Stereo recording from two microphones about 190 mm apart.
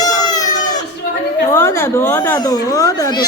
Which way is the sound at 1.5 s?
15° left (ahead or behind).